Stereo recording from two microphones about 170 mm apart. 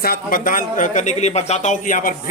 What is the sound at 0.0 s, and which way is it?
Speech, 60° left (ahead or behind).